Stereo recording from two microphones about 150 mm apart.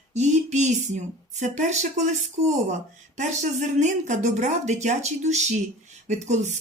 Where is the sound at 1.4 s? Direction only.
50° right (ahead or behind).